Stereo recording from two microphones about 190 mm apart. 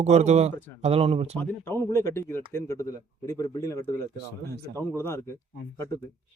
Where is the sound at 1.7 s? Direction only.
15° left (ahead or behind).